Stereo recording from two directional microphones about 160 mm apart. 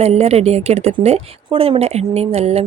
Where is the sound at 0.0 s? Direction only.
40° right (ahead or behind).